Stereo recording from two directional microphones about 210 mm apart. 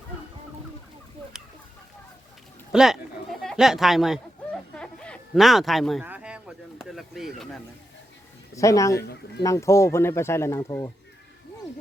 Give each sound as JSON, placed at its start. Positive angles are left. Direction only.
{"t": 2.7, "sound": "speech", "side_deg": 0}
{"t": 4.7, "sound": "a sound", "side_deg": 5}
{"t": 8.5, "sound": "speech", "side_deg": 15}
{"t": 9.0, "sound": "speech", "side_deg": 50}
{"t": 9.4, "sound": "speech", "side_deg": 15}